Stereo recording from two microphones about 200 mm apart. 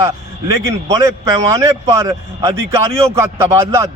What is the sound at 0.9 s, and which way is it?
Speech, 15° right (ahead or behind).